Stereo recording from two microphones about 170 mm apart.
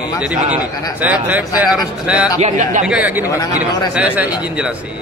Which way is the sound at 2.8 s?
10° right (ahead or behind).